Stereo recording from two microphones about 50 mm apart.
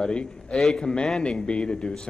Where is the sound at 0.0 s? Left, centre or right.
Centre.